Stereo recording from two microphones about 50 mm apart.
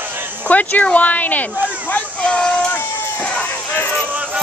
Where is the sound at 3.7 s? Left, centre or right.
Left.